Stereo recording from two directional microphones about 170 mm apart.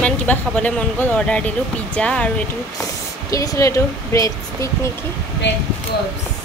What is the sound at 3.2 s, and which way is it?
Speech, 20° left (ahead or behind).